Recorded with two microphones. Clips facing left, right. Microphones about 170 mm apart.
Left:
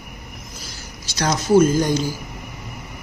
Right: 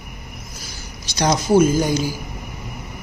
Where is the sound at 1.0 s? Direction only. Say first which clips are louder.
Right 2 dB; 15° right (ahead or behind).